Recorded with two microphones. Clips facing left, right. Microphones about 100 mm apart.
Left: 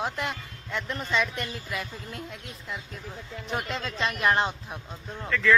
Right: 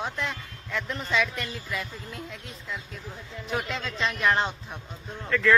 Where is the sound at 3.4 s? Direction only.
Centre (ahead or behind).